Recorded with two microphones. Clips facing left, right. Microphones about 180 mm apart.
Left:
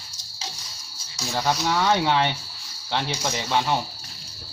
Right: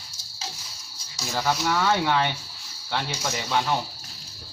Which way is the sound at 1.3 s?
15° left (ahead or behind).